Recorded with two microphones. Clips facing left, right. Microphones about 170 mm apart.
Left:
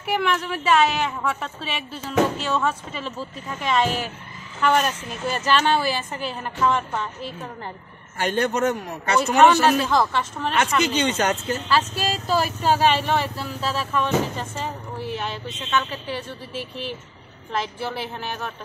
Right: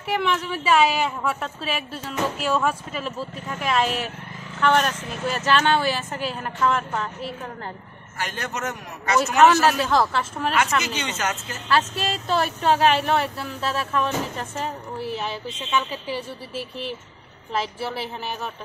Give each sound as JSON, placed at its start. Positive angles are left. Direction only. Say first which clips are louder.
{"t": 0.0, "sound": "a woman's voice", "louder": "left 1 dB", "side_deg": 0}
{"t": 8.2, "sound": "a man's voice", "louder": "left 8 dB", "side_deg": 30}
{"t": 9.8, "sound": "a woman's voice", "louder": "even", "side_deg": 0}
{"t": 11.0, "sound": "a man's voice", "louder": "left 6 dB", "side_deg": 30}
{"t": 11.7, "sound": "a woman's voice", "louder": "right 2 dB", "side_deg": 0}